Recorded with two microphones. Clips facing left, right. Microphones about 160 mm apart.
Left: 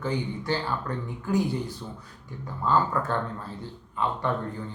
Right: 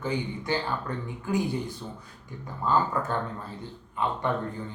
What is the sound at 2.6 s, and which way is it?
Speech, 15° right (ahead or behind).